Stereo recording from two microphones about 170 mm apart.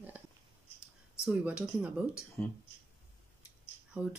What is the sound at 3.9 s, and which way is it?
Speech, 10° right (ahead or behind).